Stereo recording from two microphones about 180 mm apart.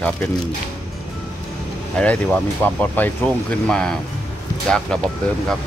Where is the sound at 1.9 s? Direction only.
5° left (ahead or behind).